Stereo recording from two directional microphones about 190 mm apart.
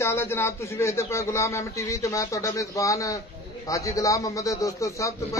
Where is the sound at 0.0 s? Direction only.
15° left (ahead or behind).